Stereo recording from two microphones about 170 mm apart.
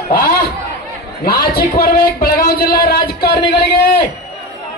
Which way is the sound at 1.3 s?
65° left (ahead or behind).